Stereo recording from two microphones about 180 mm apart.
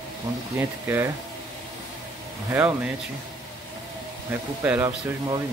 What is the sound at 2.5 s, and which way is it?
Speech, 10° right (ahead or behind).